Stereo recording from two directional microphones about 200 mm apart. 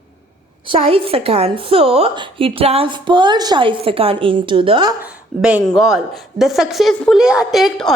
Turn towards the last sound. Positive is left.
turn(degrees=0)  # may be behind; listen again after turning